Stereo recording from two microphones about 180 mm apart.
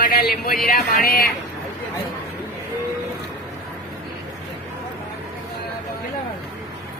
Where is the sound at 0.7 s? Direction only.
55° left (ahead or behind).